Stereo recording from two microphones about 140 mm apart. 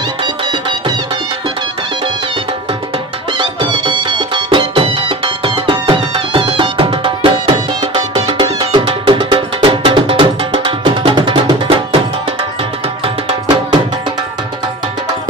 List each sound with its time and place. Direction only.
0.2 s music: 35° right (ahead or behind)
3.3 s music: 35° right (ahead or behind)